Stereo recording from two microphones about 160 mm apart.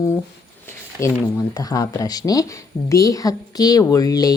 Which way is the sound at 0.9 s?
20° left (ahead or behind).